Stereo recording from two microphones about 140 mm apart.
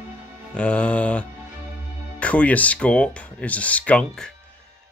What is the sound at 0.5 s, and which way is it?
Speech, 10° left (ahead or behind).